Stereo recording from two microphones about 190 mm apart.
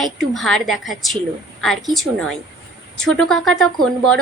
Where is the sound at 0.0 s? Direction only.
Centre (ahead or behind).